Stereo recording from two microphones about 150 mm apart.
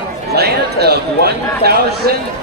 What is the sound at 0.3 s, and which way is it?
Speech, 90° right.